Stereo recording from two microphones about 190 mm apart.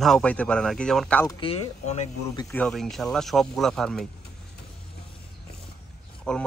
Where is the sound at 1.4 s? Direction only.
30° left (ahead or behind).